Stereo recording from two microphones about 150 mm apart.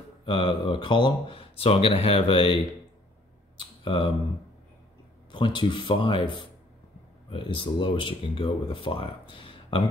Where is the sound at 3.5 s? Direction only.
35° left (ahead or behind).